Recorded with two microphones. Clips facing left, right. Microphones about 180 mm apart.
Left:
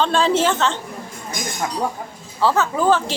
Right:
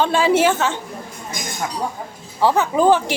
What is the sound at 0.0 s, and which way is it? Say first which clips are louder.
Speech: right 2 dB; 10° right (ahead or behind).